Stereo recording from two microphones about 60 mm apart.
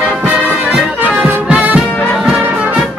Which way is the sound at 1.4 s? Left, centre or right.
Right.